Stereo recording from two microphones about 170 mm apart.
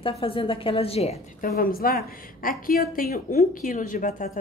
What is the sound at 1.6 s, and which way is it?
A woman's voice, 60° left (ahead or behind).